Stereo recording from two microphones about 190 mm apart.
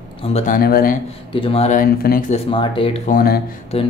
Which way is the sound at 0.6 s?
50° left (ahead or behind).